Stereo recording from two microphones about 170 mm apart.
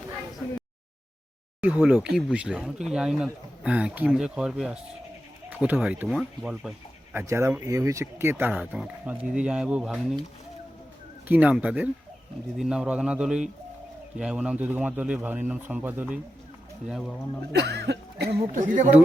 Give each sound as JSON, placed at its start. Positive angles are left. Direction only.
{"t": 1.6, "sound": "speech", "side_deg": -5}
{"t": 11.3, "sound": "speech", "side_deg": -10}
{"t": 17.5, "sound": "cough", "side_deg": -80}
{"t": 18.5, "sound": "speech", "side_deg": -50}